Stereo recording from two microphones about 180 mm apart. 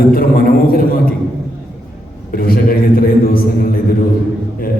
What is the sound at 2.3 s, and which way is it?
A man's voice, 55° left (ahead or behind).